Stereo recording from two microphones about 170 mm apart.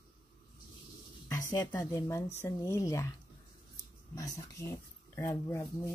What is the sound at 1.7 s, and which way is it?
Speech, 20° left (ahead or behind).